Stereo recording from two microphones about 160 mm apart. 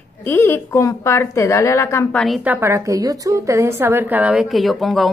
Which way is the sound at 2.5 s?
15° right (ahead or behind).